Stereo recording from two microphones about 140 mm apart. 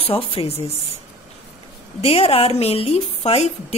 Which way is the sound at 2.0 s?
40° left (ahead or behind).